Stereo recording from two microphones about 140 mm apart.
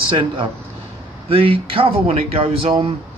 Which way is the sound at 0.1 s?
40° right (ahead or behind).